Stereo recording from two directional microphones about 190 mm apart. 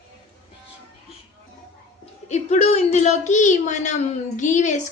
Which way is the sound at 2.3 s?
35° left (ahead or behind).